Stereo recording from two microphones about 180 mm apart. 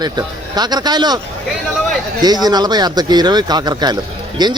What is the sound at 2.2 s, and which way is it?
Speech, 20° right (ahead or behind).